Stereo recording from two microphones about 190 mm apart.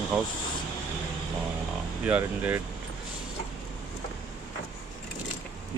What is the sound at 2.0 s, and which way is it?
Speech, 10° right (ahead or behind).